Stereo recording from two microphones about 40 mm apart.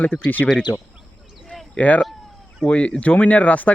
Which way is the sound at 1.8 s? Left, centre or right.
Left.